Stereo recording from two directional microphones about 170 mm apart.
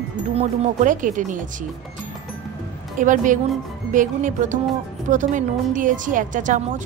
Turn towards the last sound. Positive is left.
turn(degrees=-50)  # may be behind; listen again after turning